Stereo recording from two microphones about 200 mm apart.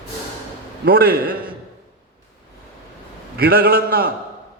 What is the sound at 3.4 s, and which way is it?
Speech, 50° right (ahead or behind).